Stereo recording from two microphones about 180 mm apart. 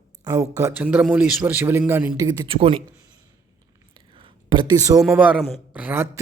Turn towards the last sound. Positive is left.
turn(degrees=-10)  # may be behind; listen again after turning